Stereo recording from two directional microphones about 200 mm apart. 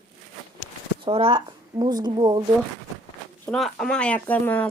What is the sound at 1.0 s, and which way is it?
Speech, 25° right (ahead or behind).